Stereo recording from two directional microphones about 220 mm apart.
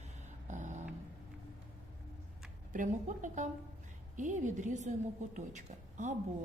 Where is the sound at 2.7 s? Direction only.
35° right (ahead or behind).